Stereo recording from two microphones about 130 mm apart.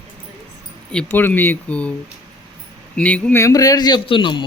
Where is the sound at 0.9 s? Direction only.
10° left (ahead or behind).